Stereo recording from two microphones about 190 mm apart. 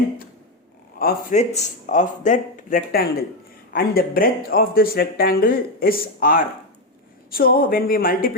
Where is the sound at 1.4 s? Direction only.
35° left (ahead or behind).